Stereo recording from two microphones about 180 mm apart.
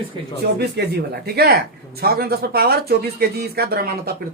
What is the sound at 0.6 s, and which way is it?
Speech, 65° right (ahead or behind).